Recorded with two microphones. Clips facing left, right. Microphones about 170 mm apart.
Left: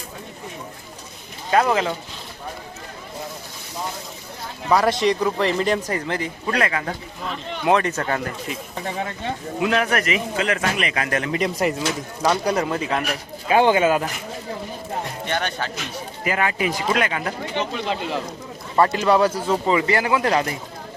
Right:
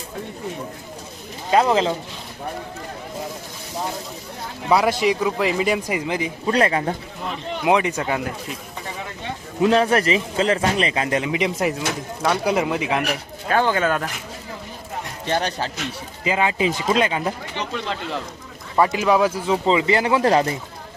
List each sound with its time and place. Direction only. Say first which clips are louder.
1.5 s speech: right 2 dB; 20° right (ahead or behind)
4.7 s a man's voice: even; 5° right (ahead or behind)
6.5 s speech: right 4 dB; 30° right (ahead or behind)
7.6 s a man's voice: even; 15° right (ahead or behind)
9.6 s speech: right 5 dB; 30° right (ahead or behind)
11.3 s a man's voice: even; 10° right (ahead or behind)
13.5 s speech: left 3 dB; 15° left (ahead or behind)
15.3 s speech: right 4 dB; 35° right (ahead or behind)
16.2 s speech: right 2 dB; 20° right (ahead or behind)
18.8 s a man's voice: even; 10° right (ahead or behind)
19.6 s speech: right 3 dB; 20° right (ahead or behind)